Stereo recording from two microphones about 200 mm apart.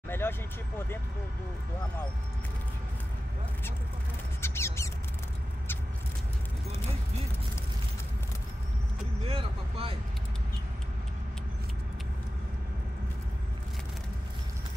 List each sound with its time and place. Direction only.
0.1 s vehicle: 10° left (ahead or behind)
4.4 s a sound: 15° left (ahead or behind)
9.2 s speech: 30° right (ahead or behind)